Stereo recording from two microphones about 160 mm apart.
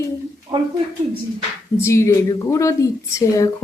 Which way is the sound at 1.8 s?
15° left (ahead or behind).